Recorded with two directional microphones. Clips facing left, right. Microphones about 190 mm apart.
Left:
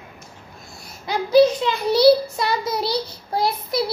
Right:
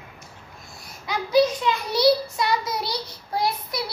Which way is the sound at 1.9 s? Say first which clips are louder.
Left 6 dB; 30° left (ahead or behind).